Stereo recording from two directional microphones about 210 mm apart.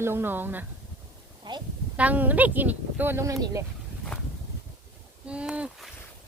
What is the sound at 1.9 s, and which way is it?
A woman's voice, 5° right (ahead or behind).